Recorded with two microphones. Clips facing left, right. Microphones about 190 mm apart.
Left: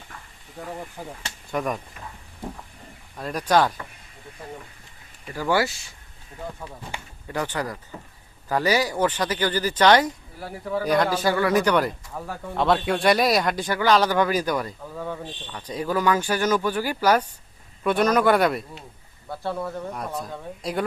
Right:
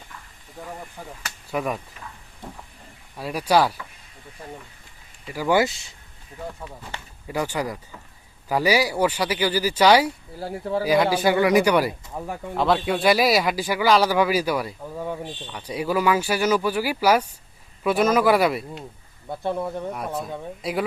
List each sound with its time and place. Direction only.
1.5 s speech: 5° right (ahead or behind)
3.2 s speech: 5° right (ahead or behind)
5.3 s speech: 15° right (ahead or behind)
6.9 s speech: 10° left (ahead or behind)
7.3 s speech: 10° right (ahead or behind)
10.4 s speech: 30° right (ahead or behind)
10.8 s speech: 5° right (ahead or behind)
12.5 s speech: centre (ahead or behind)
19.3 s speech: 20° right (ahead or behind)
20.6 s speech: 5° right (ahead or behind)